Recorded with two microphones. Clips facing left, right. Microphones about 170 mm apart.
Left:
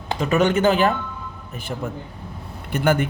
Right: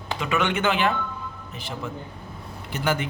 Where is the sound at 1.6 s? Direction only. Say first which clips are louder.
Left 4 dB; 55° left (ahead or behind).